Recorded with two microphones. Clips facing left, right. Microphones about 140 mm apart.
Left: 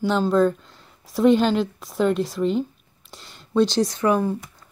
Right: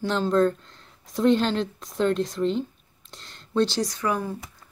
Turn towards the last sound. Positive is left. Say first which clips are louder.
# left 6 dB
turn(degrees=25)  # may be behind; listen again after turning